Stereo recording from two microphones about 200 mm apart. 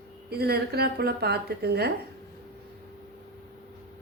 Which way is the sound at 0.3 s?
50° right (ahead or behind).